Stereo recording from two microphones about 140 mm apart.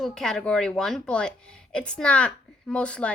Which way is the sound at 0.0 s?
5° left (ahead or behind).